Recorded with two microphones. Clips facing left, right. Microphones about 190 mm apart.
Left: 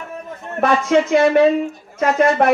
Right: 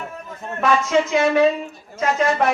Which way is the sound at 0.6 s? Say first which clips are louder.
Left 3 dB; 60° left (ahead or behind).